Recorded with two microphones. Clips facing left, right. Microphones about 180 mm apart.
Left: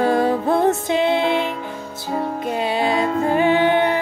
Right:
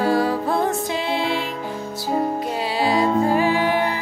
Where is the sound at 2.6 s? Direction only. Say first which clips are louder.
Even; 20° left (ahead or behind).